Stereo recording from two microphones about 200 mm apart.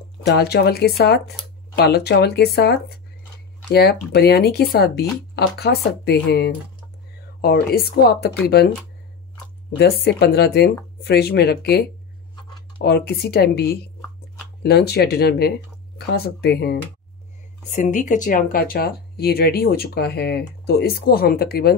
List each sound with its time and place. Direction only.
0.4 s speech: 50° left (ahead or behind)
9.8 s speech: 55° left (ahead or behind)
12.8 s speech: 55° left (ahead or behind)
17.6 s speech: 40° left (ahead or behind)